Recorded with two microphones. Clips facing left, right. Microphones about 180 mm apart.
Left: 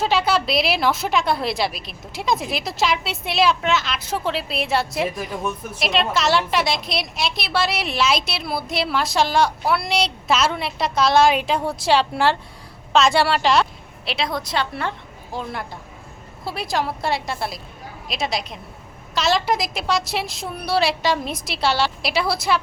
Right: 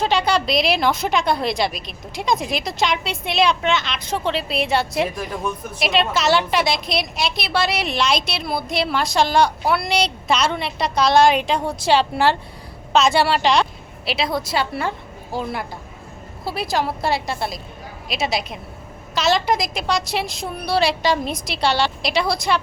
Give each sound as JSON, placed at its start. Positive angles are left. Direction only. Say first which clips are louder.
{"t": 0.0, "sound": "a woman's voice", "louder": "right 1 dB", "side_deg": 5}